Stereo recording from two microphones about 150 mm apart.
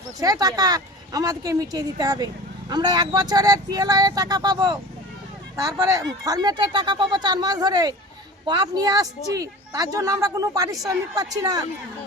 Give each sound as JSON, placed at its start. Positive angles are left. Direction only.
{"t": 0.2, "sound": "speech", "side_deg": -25}